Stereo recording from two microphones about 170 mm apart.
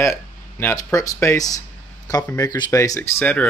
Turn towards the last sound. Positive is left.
turn(degrees=10)  # may be behind; listen again after turning